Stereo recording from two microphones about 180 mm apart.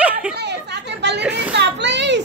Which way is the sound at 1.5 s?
75° right (ahead or behind).